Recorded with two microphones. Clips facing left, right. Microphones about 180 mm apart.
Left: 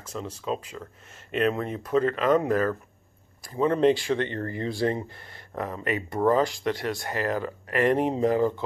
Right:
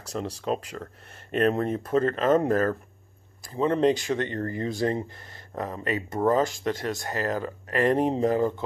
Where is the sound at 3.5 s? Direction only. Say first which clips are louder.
Left 1 dB; 30° right (ahead or behind).